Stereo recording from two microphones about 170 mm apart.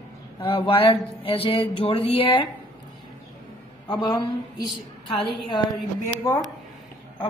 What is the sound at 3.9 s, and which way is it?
Speech, 25° left (ahead or behind).